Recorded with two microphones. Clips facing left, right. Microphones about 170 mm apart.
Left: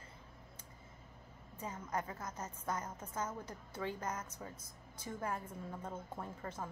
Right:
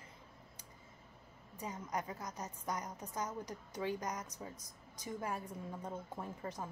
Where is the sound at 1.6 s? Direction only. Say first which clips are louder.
Even; 15° right (ahead or behind).